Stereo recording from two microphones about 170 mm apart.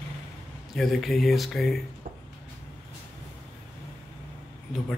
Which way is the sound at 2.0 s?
55° right (ahead or behind).